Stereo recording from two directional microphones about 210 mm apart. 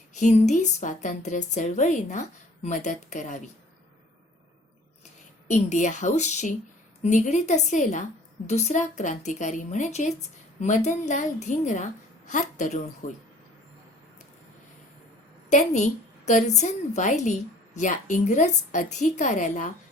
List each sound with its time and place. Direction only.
0.1 s a woman's voice: 35° left (ahead or behind)
5.5 s a woman's voice: 35° left (ahead or behind)
15.4 s a woman's voice: 35° left (ahead or behind)